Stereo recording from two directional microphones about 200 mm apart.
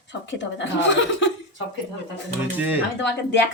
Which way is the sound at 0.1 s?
65° left (ahead or behind).